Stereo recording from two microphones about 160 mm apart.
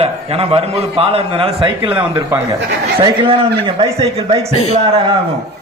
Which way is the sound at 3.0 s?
35° right (ahead or behind).